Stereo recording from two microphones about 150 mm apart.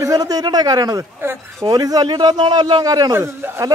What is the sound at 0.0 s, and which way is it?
A man's voice, 25° right (ahead or behind).